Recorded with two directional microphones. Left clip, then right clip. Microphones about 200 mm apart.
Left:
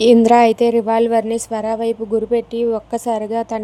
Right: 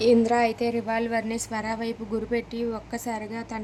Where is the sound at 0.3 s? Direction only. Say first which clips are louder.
Left 12 dB; 40° left (ahead or behind).